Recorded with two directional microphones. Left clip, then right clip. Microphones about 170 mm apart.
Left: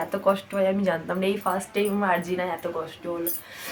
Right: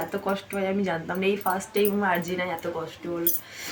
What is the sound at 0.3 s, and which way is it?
Speech, 20° left (ahead or behind).